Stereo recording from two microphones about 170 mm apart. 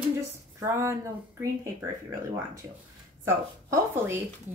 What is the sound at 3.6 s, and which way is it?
Speech, 15° right (ahead or behind).